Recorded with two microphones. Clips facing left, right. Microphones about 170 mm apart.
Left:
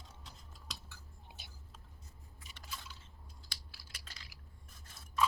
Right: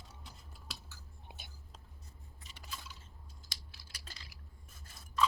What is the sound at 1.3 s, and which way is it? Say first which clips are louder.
Whispering: right 3 dB; 55° right (ahead or behind).